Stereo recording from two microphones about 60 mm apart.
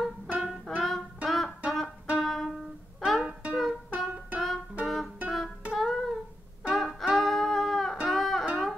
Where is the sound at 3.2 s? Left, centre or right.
Centre.